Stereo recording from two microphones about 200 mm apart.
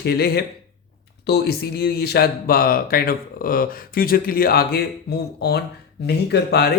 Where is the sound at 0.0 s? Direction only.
55° left (ahead or behind).